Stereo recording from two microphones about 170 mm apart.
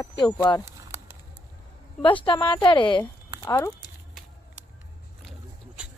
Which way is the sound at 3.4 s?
20° left (ahead or behind).